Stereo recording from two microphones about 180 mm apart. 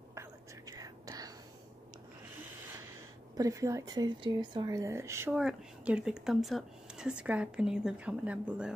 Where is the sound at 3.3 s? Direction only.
20° right (ahead or behind).